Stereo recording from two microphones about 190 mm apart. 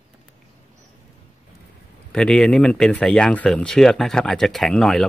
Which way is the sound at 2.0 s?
5° left (ahead or behind).